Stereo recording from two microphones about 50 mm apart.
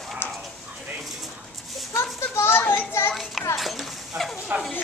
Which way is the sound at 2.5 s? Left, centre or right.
Left.